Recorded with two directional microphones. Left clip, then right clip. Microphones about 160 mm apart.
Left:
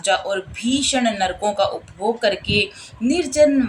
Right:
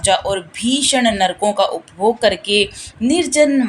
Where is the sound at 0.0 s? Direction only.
25° right (ahead or behind).